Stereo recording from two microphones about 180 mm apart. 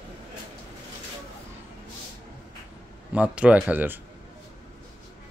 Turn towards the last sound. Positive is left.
turn(degrees=-10)  # may be behind; listen again after turning